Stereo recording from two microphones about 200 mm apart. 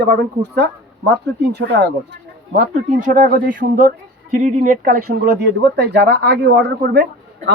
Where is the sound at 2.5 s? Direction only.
40° right (ahead or behind).